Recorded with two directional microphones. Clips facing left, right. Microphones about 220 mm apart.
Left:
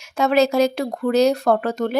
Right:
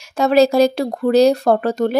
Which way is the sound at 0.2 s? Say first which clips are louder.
Right 4 dB; 35° right (ahead or behind).